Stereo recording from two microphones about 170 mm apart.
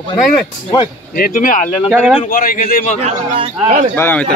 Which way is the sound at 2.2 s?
55° left (ahead or behind).